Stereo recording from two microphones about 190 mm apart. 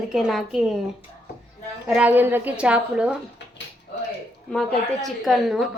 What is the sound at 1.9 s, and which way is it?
Speech, 10° right (ahead or behind).